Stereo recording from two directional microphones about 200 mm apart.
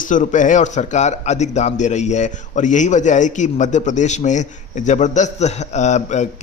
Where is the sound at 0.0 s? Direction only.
40° left (ahead or behind).